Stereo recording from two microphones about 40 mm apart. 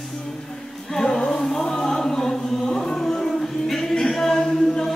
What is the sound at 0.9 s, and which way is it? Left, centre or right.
Chant, centre.